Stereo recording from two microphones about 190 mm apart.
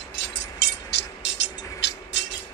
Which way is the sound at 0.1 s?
70° left (ahead or behind).